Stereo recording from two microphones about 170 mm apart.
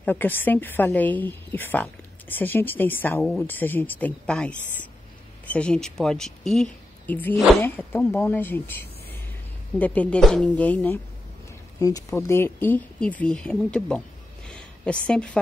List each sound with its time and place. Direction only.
0.0 s a woman's voice: 10° left (ahead or behind)
9.8 s a woman's voice: 10° left (ahead or behind)
14.5 s a sound: 5° left (ahead or behind)